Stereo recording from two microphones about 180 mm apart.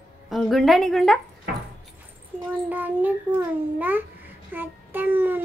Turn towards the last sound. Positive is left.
turn(degrees=-10)  # may be behind; listen again after turning